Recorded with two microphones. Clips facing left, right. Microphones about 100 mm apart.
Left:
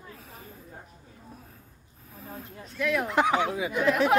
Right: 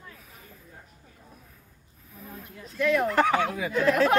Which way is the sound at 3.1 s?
15° left (ahead or behind).